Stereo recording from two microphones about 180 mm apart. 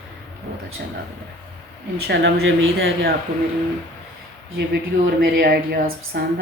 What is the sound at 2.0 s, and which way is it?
Speech, 80° right.